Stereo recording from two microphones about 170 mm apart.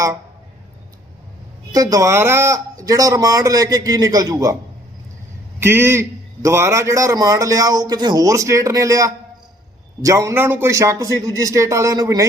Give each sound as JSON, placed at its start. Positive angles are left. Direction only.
{"t": 1.7, "sound": "a man's voice", "side_deg": -20}
{"t": 5.5, "sound": "a man's voice", "side_deg": -15}